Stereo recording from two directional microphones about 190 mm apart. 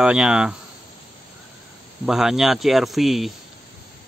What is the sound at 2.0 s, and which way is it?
Speech, 5° right (ahead or behind).